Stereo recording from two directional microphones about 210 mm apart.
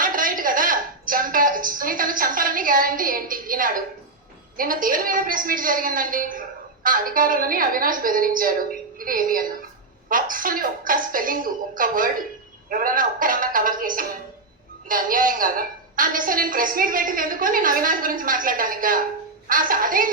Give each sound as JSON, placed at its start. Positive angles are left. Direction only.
{"t": 0.0, "sound": "a woman's voice", "side_deg": -40}